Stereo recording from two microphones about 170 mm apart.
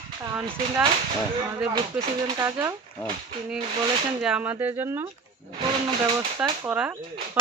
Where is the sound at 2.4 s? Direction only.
20° right (ahead or behind).